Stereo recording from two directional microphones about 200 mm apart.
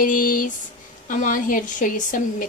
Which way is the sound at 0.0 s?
40° left (ahead or behind).